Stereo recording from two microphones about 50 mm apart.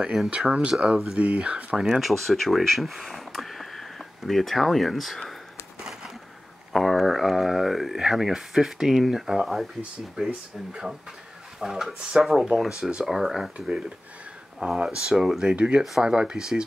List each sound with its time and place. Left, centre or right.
0.2 s speech: centre
0.5 s speech: centre
1.9 s speech: centre
6.7 s a sound: centre
10.1 s speech: centre
14.6 s speech: right
15.0 s speech: centre